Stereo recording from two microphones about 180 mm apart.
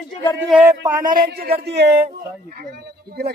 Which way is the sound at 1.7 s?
65° right (ahead or behind).